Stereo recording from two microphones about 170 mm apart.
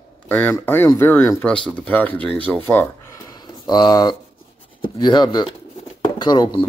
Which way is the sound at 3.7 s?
25° left (ahead or behind).